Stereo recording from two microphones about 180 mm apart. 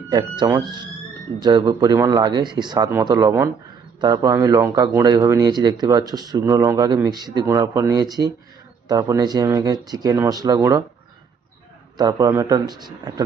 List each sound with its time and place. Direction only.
0.1 s speech: 25° right (ahead or behind)
11.9 s speech: 20° right (ahead or behind)